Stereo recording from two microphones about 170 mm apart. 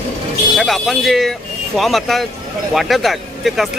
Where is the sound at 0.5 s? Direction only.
Centre (ahead or behind).